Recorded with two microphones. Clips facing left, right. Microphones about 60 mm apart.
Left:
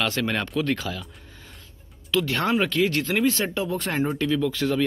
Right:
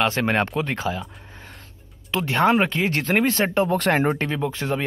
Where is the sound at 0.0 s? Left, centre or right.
Right.